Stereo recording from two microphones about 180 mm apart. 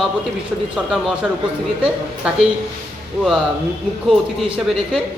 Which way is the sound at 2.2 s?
5° right (ahead or behind).